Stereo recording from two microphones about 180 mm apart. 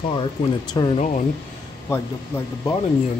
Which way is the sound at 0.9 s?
45° left (ahead or behind).